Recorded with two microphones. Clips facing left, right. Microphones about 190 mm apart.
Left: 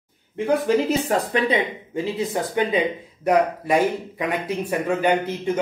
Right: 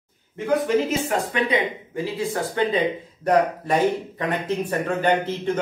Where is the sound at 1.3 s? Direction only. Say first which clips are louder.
Left 1 dB; 25° left (ahead or behind); by 5.6 s 10° left (ahead or behind).